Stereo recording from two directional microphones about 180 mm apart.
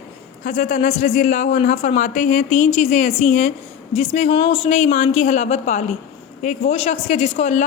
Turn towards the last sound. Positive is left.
turn(degrees=40)  # may be behind; listen again after turning